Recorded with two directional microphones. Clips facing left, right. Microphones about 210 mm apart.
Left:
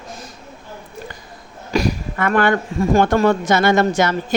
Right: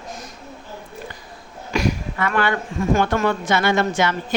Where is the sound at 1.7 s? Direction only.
35° left (ahead or behind).